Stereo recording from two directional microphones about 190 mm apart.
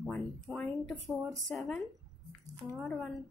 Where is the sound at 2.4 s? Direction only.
20° right (ahead or behind).